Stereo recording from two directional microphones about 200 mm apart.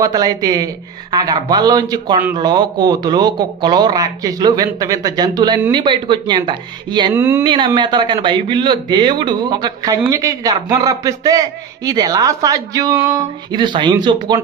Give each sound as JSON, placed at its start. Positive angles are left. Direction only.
{"t": 0.0, "sound": "a man's voice", "side_deg": -20}
{"t": 7.1, "sound": "speech", "side_deg": -10}
{"t": 7.4, "sound": "a man's voice", "side_deg": -25}